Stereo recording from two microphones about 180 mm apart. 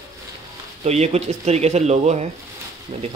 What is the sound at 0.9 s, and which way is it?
Speech, 35° right (ahead or behind).